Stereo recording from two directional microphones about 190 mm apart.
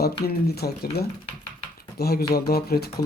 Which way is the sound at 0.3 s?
55° left (ahead or behind).